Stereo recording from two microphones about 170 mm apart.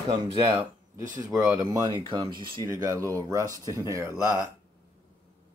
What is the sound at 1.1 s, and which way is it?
Speech, 20° right (ahead or behind).